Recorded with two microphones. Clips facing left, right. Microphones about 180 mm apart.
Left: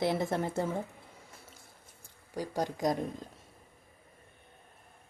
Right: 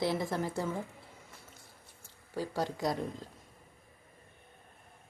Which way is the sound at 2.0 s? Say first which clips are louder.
Even; 15° left (ahead or behind).